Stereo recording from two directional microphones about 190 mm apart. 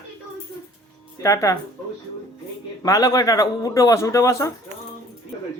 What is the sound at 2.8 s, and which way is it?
A man's voice, 20° left (ahead or behind).